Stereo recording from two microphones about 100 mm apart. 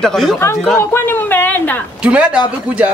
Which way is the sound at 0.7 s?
25° left (ahead or behind).